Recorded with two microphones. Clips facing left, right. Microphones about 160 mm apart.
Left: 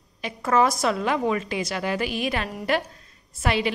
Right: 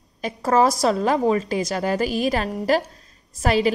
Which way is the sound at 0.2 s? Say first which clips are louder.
Right 3 dB; 35° right (ahead or behind).